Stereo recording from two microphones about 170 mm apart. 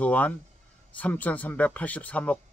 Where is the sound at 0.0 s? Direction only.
10° left (ahead or behind).